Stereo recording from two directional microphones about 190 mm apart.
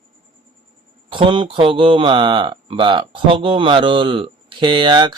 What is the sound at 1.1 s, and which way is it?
Speech, 25° right (ahead or behind).